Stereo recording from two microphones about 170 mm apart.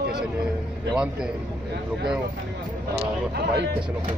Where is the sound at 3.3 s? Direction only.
75° right (ahead or behind).